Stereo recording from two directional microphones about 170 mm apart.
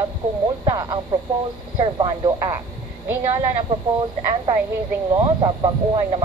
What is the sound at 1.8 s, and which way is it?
Speech, 25° right (ahead or behind).